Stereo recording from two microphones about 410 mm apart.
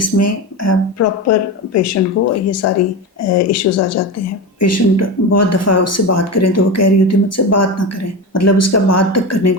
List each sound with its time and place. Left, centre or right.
0.0 s speech: left